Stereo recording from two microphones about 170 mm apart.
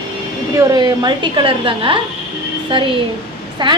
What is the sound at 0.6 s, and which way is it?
A woman's voice, 20° right (ahead or behind).